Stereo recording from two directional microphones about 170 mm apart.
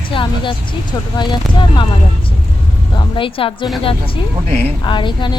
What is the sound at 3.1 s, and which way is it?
Speech, 30° left (ahead or behind).